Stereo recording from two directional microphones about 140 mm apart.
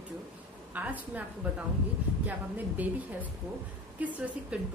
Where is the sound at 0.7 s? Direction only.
10° right (ahead or behind).